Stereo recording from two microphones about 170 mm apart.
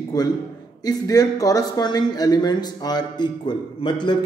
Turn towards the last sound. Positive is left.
turn(degrees=25)  # may be behind; listen again after turning